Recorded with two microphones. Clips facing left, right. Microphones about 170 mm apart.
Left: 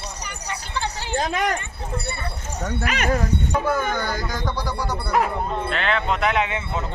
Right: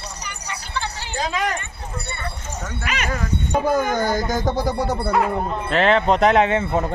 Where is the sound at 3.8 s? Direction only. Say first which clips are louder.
Right 5 dB; 40° right (ahead or behind).